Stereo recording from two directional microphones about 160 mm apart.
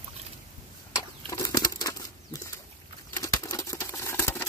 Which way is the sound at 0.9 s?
20° left (ahead or behind).